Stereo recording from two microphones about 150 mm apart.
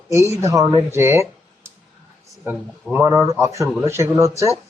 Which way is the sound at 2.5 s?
15° right (ahead or behind).